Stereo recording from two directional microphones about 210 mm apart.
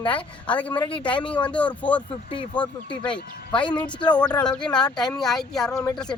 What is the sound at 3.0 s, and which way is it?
Speech, 5° left (ahead or behind).